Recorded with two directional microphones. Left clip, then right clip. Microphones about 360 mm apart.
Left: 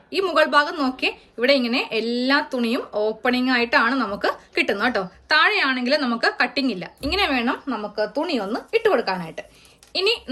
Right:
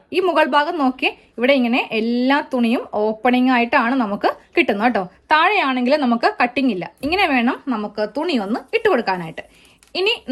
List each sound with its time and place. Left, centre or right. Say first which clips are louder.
0.1 s a woman's voice: right 2 dB; centre